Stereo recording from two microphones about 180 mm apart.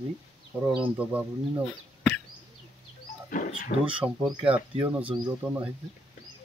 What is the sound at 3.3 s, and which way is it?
Speech, 50° left (ahead or behind).